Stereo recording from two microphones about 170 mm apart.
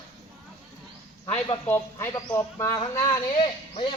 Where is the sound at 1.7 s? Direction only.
15° left (ahead or behind).